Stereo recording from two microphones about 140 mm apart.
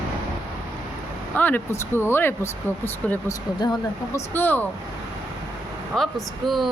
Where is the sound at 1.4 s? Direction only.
15° left (ahead or behind).